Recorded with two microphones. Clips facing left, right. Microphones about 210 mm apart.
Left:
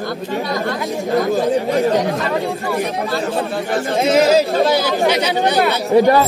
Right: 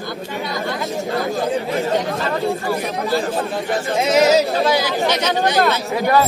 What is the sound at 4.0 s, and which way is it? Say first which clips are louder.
Speech: left 1 dB; 50° left (ahead or behind).